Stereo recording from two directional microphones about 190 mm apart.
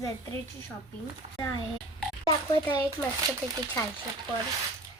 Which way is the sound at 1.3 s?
20° left (ahead or behind).